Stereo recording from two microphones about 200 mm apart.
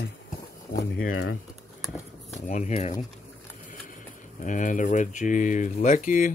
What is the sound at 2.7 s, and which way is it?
Speech, 30° left (ahead or behind).